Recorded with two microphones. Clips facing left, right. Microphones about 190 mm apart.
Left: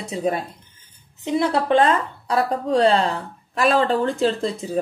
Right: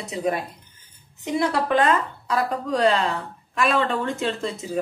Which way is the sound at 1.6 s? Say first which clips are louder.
Left 3 dB; 30° left (ahead or behind).